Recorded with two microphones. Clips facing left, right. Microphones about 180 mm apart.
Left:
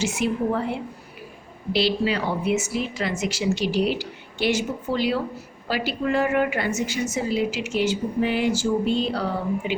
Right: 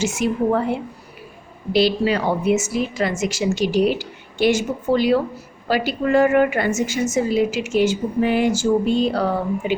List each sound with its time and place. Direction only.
0.0 s a woman's voice: 45° right (ahead or behind)